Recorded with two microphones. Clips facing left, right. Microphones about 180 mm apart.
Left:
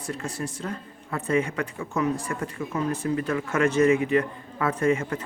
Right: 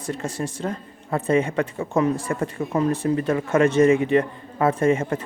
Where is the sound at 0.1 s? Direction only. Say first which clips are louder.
Right 4 dB; 25° right (ahead or behind).